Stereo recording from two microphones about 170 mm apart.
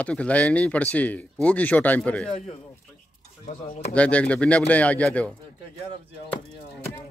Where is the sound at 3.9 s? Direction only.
5° left (ahead or behind).